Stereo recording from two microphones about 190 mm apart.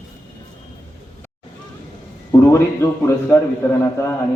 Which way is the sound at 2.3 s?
15° left (ahead or behind).